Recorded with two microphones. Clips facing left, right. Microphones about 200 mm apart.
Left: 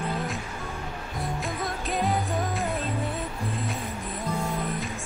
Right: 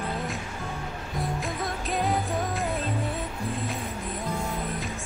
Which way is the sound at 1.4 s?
Centre (ahead or behind).